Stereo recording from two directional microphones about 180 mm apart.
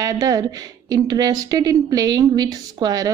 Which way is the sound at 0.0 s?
20° right (ahead or behind).